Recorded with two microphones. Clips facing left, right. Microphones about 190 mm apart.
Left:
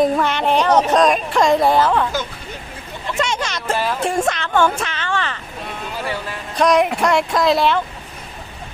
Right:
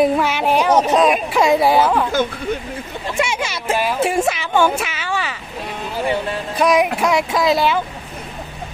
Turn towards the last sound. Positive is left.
turn(degrees=0)  # may be behind; listen again after turning